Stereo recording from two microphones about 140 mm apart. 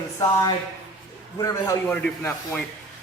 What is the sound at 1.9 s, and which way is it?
Speech, 5° left (ahead or behind).